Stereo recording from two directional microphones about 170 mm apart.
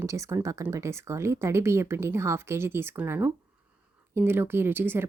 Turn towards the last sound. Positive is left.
turn(degrees=-15)  # may be behind; listen again after turning